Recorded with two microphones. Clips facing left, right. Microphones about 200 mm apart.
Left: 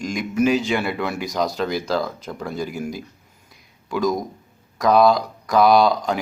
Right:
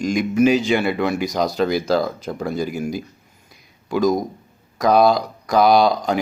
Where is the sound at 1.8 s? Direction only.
40° right (ahead or behind).